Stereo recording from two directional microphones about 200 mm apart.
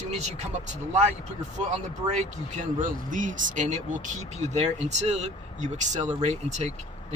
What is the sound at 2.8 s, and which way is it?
Speech, 40° right (ahead or behind).